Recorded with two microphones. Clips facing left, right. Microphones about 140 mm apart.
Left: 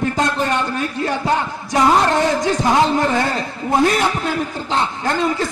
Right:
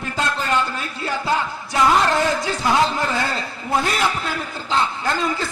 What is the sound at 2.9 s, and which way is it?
A man's voice, 20° left (ahead or behind).